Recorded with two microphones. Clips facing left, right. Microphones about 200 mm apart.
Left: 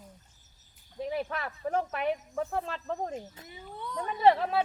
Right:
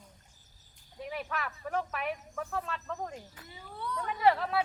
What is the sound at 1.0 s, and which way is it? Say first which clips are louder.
Speech: left 4 dB; 30° left (ahead or behind).